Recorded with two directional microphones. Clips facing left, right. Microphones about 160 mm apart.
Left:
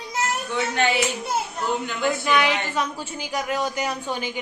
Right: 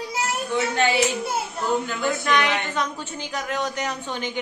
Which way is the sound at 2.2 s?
10° left (ahead or behind).